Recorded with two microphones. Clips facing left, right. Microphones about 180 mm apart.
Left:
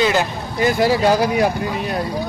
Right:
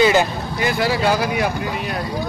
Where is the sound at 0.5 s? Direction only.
40° left (ahead or behind).